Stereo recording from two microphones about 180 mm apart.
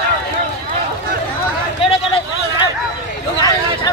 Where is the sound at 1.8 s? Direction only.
30° left (ahead or behind).